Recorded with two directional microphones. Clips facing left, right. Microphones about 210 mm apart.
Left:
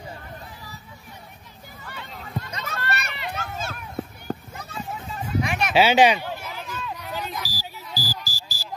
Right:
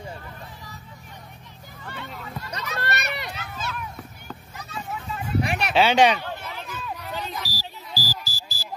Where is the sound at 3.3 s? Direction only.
45° left (ahead or behind).